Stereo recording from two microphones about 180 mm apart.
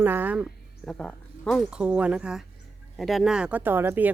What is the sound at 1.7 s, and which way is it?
Speech, 5° right (ahead or behind).